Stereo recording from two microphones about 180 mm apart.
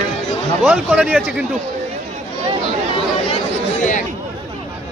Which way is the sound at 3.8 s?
45° left (ahead or behind).